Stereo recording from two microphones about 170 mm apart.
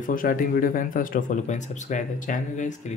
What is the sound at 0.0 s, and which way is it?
Speech, 55° left (ahead or behind).